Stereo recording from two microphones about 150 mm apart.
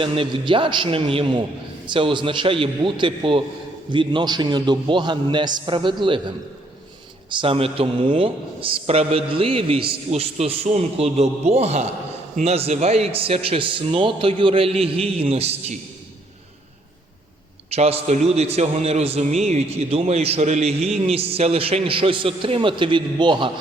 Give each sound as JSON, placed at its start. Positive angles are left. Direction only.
{"t": 0.0, "sound": "a man's voice", "side_deg": -35}
{"t": 17.7, "sound": "a man's voice", "side_deg": -45}